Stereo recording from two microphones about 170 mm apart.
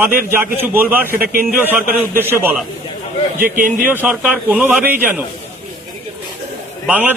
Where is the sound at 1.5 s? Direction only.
10° right (ahead or behind).